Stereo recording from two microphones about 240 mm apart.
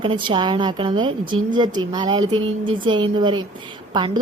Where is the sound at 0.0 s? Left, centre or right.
Right.